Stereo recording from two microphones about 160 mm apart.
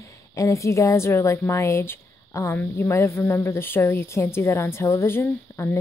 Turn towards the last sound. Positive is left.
turn(degrees=15)  # may be behind; listen again after turning